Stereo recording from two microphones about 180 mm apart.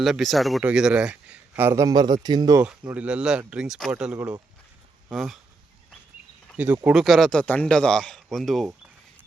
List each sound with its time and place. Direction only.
0.0 s speech: centre (ahead or behind); by 2.6 s 20° right (ahead or behind)
2.6 s a man's voice: 5° right (ahead or behind)
6.5 s a man's voice: 5° right (ahead or behind)